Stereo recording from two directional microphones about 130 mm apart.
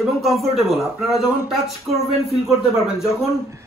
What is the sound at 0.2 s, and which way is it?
Speech, centre (ahead or behind).